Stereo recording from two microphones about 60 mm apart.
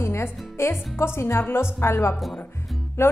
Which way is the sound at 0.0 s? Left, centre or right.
Left.